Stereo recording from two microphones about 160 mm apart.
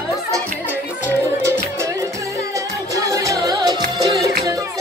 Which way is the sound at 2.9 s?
20° right (ahead or behind).